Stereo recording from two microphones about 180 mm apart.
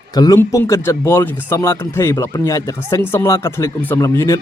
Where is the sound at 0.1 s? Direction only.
20° left (ahead or behind).